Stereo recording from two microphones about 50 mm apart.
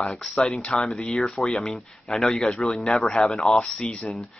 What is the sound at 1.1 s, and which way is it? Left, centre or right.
Speech, centre.